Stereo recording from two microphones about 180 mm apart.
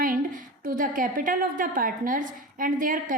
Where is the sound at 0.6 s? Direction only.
50° right (ahead or behind).